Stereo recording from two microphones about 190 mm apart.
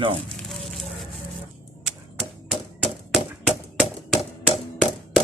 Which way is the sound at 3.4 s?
Centre (ahead or behind).